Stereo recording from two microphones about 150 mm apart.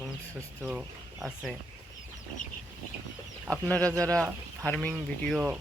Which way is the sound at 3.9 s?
20° right (ahead or behind).